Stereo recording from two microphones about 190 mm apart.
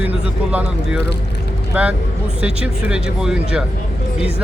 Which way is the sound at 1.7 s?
10° right (ahead or behind).